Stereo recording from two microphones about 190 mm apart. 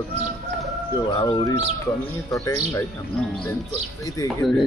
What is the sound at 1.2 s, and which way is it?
Speech, 20° left (ahead or behind).